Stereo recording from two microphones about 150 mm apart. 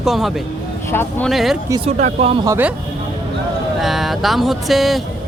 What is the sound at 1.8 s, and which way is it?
Speech, 50° right (ahead or behind).